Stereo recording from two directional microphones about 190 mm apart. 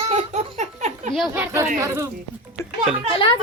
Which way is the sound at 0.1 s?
40° right (ahead or behind).